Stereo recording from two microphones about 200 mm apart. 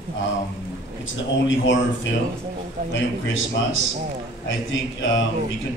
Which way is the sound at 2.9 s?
70° left (ahead or behind).